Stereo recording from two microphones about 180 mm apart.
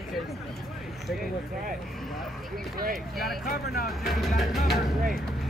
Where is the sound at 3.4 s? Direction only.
55° left (ahead or behind).